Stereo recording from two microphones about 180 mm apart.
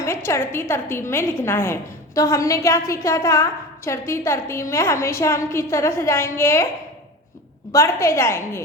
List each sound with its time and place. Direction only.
0.0 s a woman's voice: 15° left (ahead or behind)
7.7 s a woman's voice: 15° left (ahead or behind)